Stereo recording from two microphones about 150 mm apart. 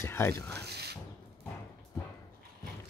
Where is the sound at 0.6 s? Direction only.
90° right.